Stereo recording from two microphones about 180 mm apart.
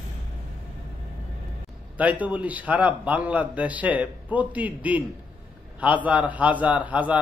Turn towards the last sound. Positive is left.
turn(degrees=-10)  # may be behind; listen again after turning